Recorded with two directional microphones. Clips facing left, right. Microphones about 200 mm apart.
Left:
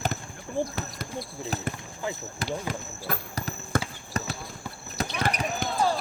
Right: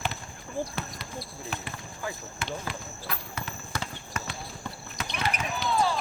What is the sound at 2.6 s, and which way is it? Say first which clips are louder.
Basketball bounce: left 4 dB; 40° left (ahead or behind).